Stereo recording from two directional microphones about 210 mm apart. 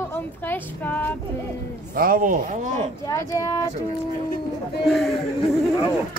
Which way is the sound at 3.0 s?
15° left (ahead or behind).